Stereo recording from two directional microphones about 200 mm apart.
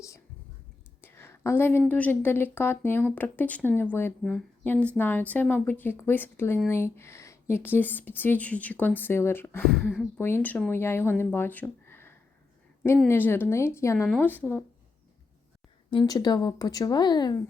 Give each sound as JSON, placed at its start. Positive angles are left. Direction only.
{"t": 1.0, "sound": "a sound", "side_deg": 10}
{"t": 1.8, "sound": "speech", "side_deg": 10}
{"t": 15.9, "sound": "speech", "side_deg": 20}